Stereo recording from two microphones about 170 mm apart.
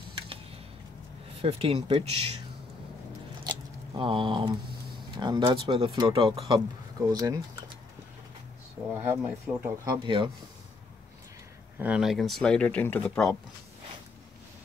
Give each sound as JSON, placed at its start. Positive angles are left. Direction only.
{"t": 1.4, "sound": "speech", "side_deg": -35}
{"t": 3.4, "sound": "a sound", "side_deg": -30}
{"t": 5.1, "sound": "speech", "side_deg": -25}
{"t": 7.1, "sound": "speech", "side_deg": -20}
{"t": 9.1, "sound": "speech", "side_deg": -15}
{"t": 10.0, "sound": "speech", "side_deg": -30}
{"t": 11.8, "sound": "speech", "side_deg": -5}